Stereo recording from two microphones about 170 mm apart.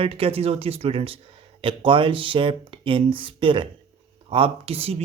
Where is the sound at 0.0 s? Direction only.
35° right (ahead or behind).